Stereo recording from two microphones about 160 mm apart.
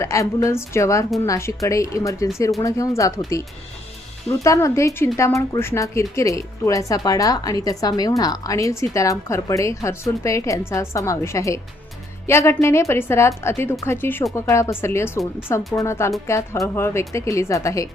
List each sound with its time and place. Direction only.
0.0 s a woman's voice: 20° left (ahead or behind)